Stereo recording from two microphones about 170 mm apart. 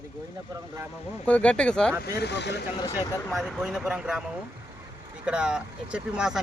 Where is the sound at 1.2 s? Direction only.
5° left (ahead or behind).